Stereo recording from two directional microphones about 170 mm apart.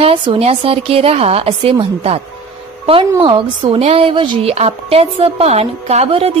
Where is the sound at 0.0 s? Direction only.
35° right (ahead or behind).